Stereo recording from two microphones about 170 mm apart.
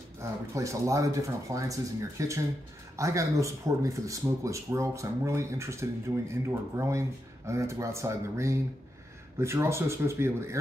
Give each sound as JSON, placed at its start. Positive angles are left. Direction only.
{"t": 0.2, "sound": "speech", "side_deg": -20}